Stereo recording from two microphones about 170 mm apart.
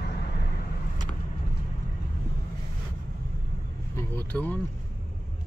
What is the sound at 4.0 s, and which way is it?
Vehicle, 10° left (ahead or behind).